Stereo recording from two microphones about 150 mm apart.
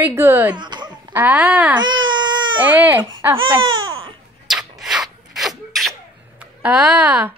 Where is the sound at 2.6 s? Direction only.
10° right (ahead or behind).